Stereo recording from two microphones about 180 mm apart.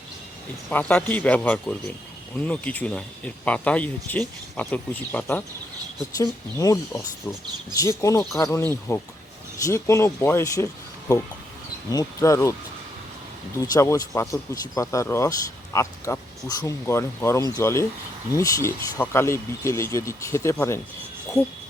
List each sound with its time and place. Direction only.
0.7 s speech: 10° left (ahead or behind)
6.1 s speech: 20° left (ahead or behind)
11.9 s speech: 20° left (ahead or behind)
13.6 s speech: 20° left (ahead or behind)